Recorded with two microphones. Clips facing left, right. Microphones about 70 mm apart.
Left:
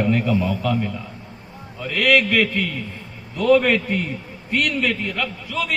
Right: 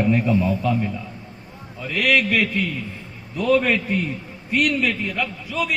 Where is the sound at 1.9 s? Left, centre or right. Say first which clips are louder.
Left 2 dB; centre.